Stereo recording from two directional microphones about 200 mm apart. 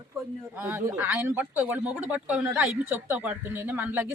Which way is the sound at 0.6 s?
10° right (ahead or behind).